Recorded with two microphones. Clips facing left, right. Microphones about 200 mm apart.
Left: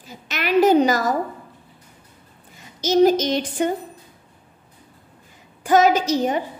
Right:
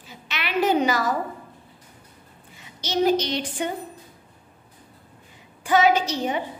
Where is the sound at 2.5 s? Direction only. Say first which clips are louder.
Left 8 dB; 45° left (ahead or behind).